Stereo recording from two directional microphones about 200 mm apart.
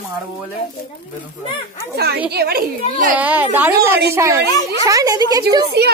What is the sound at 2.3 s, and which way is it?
Speech, 50° right (ahead or behind).